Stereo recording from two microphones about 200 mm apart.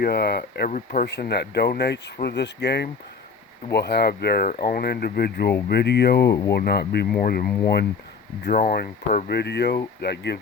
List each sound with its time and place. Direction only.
0.0 s speech: 50° left (ahead or behind)
4.4 s speech: 45° left (ahead or behind)